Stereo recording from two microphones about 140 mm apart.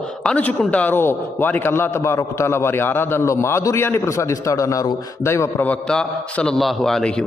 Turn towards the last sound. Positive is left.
turn(degrees=5)  # may be behind; listen again after turning